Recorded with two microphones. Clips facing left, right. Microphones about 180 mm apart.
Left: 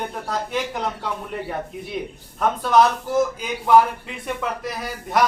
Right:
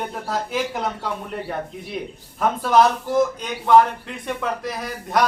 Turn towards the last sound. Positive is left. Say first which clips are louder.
# even
turn(degrees=0)  # may be behind; listen again after turning